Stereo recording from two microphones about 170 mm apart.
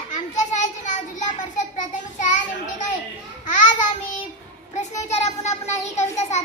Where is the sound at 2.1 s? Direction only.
50° left (ahead or behind).